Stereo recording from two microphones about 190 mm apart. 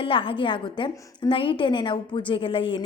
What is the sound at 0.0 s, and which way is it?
A woman's voice, 30° left (ahead or behind).